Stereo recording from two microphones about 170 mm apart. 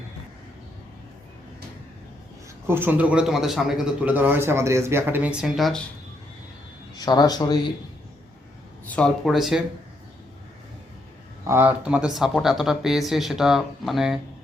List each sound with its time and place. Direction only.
2.6 s a man's voice: 10° right (ahead or behind)
6.9 s speech: 25° left (ahead or behind)
9.0 s speech: centre (ahead or behind)
11.4 s speech: 10° right (ahead or behind)